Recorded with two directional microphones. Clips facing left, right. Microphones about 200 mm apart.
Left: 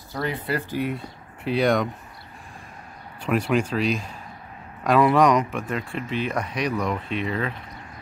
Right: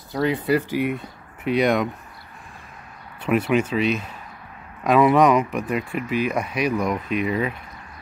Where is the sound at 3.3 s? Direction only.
5° right (ahead or behind).